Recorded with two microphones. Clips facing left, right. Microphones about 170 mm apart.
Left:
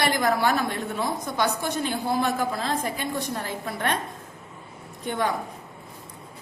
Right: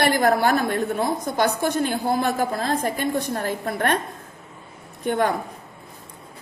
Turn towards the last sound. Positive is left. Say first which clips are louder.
# right 5 dB
turn(degrees=-45)  # may be behind; listen again after turning